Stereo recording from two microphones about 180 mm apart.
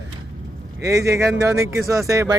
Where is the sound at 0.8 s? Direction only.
15° right (ahead or behind).